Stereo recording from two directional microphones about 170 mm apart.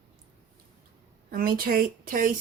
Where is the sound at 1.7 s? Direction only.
55° right (ahead or behind).